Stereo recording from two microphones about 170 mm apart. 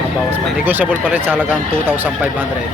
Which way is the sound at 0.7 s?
10° right (ahead or behind).